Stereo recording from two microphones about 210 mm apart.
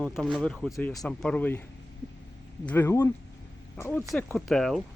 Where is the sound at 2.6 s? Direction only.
10° left (ahead or behind).